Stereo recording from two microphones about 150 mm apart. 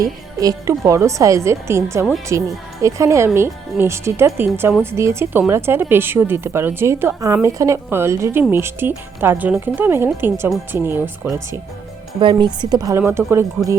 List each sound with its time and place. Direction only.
0.3 s a woman's voice: 20° right (ahead or behind)
12.2 s a woman's voice: 30° right (ahead or behind); by 13.4 s 15° right (ahead or behind)